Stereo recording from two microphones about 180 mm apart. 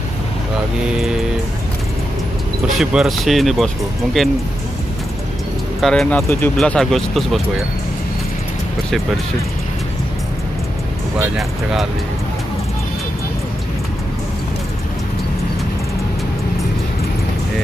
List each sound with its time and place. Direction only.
2.8 s speech: centre (ahead or behind)
5.8 s speech: centre (ahead or behind)
11.3 s speech: centre (ahead or behind)